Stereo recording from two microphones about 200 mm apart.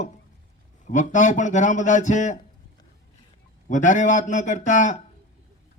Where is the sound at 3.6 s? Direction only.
40° left (ahead or behind).